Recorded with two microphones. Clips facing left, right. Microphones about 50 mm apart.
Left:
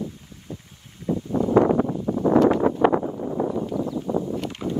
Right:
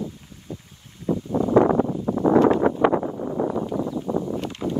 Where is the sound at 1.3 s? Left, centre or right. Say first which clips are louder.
Right 1 dB; right.